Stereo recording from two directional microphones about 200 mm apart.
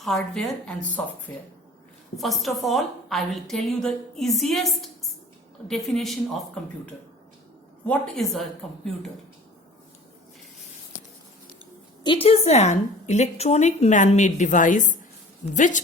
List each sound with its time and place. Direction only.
0.0 s a woman's voice: centre (ahead or behind)
7.9 s a woman's voice: centre (ahead or behind)
12.0 s a woman's voice: 30° left (ahead or behind)